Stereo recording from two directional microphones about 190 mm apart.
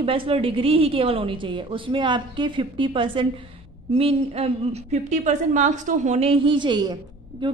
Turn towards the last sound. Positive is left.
turn(degrees=-20)  # may be behind; listen again after turning